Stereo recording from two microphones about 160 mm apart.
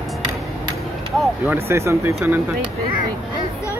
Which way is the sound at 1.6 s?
15° right (ahead or behind).